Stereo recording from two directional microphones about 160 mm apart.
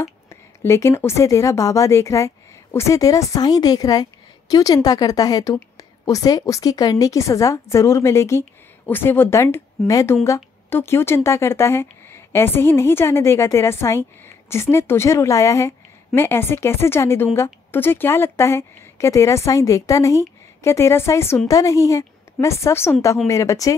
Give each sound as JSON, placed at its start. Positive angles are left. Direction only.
{"t": 0.0, "sound": "a woman's voice", "side_deg": 15}